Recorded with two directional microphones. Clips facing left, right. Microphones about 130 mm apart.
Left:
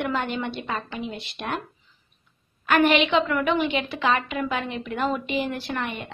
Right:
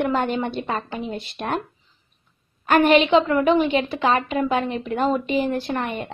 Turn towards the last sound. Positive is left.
turn(degrees=-35)  # may be behind; listen again after turning